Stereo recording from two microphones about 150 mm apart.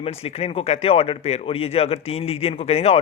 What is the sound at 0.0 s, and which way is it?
A man's voice, 40° left (ahead or behind).